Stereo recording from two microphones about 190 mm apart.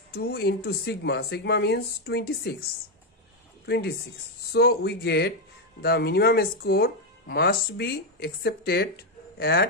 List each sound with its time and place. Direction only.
0.1 s speech: 55° left (ahead or behind)
3.6 s speech: 55° left (ahead or behind)